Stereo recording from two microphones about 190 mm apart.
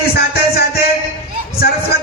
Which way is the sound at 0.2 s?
55° left (ahead or behind).